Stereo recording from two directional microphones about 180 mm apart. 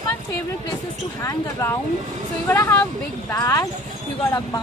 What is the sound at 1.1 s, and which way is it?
Speech, 15° left (ahead or behind).